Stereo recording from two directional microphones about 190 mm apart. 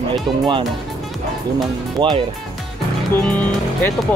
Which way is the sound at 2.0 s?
25° right (ahead or behind).